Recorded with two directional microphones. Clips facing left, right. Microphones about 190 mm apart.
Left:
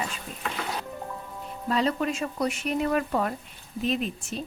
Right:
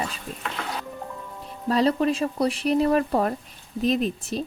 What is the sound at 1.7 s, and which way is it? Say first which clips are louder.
A woman's voice: right 5 dB; 35° right (ahead or behind).